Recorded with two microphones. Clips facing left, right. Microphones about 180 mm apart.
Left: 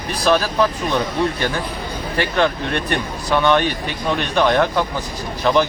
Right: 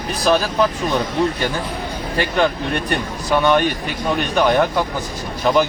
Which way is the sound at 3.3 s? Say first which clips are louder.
Right 1 dB; 10° right (ahead or behind).